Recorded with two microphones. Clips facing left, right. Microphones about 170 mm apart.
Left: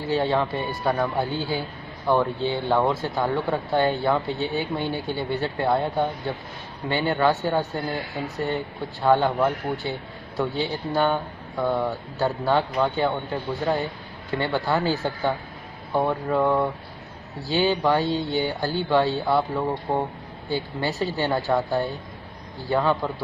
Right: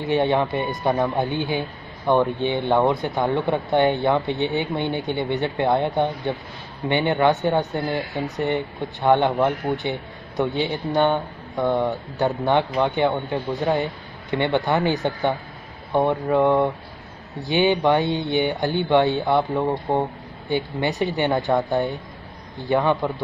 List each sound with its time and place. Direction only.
0.0 s a man's voice: 20° right (ahead or behind)